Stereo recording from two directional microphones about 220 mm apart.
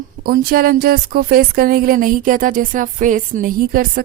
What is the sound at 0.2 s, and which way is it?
Speech, 45° right (ahead or behind).